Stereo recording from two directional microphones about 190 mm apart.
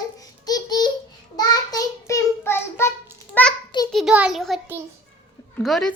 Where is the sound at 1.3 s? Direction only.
20° left (ahead or behind).